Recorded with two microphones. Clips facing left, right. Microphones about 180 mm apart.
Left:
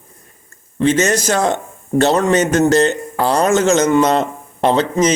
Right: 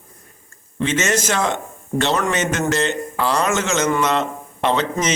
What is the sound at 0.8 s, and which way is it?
A man's voice, 40° left (ahead or behind).